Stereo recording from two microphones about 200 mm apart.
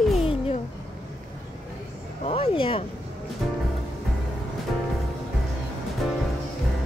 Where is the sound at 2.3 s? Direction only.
30° left (ahead or behind).